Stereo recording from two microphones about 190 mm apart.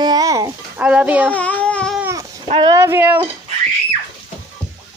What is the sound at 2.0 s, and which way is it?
Cat, 15° right (ahead or behind).